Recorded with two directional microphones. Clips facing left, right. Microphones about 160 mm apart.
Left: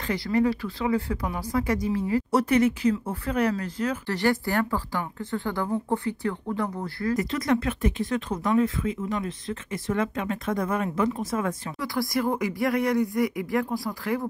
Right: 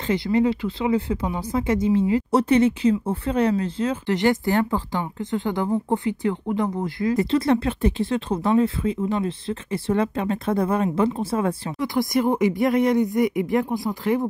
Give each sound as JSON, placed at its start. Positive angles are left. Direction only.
{"t": 0.0, "sound": "speech", "side_deg": -20}
{"t": 7.2, "sound": "speech", "side_deg": -30}